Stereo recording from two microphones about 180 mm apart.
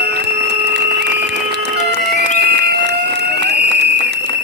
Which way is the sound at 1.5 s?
70° right (ahead or behind).